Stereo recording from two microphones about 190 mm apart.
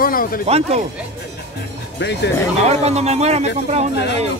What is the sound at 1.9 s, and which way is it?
Speech, 65° left (ahead or behind).